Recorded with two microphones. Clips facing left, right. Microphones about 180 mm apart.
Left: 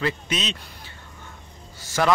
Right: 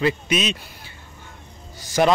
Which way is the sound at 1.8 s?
15° right (ahead or behind).